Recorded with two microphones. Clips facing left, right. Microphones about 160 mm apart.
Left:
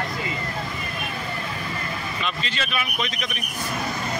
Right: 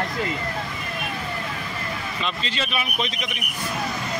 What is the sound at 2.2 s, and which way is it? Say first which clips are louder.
Speech: right 2 dB; 30° right (ahead or behind).